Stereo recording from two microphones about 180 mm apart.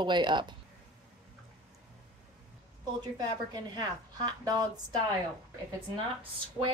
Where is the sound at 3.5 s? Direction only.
25° right (ahead or behind).